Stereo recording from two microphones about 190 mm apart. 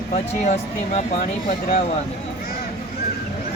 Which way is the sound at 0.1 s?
35° left (ahead or behind).